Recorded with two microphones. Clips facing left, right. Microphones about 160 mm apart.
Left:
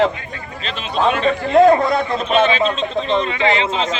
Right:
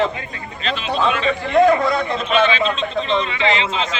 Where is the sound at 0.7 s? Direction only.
45° left (ahead or behind).